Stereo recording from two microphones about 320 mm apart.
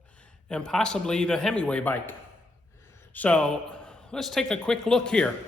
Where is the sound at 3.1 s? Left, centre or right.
Centre.